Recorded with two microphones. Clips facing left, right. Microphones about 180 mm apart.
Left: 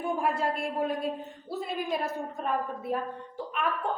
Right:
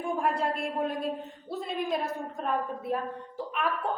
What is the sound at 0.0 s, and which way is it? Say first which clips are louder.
A woman's voice: even; 5° left (ahead or behind).